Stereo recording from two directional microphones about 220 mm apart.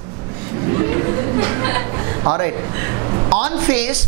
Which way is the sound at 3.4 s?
15° right (ahead or behind).